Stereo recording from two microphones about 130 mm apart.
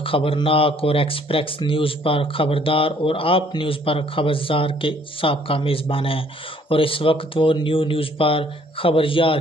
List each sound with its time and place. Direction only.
0.0 s speech: 45° left (ahead or behind)